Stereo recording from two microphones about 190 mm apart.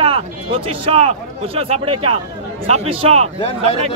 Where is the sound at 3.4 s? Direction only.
30° left (ahead or behind).